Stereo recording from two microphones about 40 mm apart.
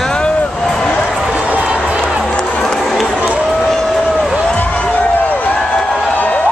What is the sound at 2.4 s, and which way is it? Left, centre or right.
Music, left.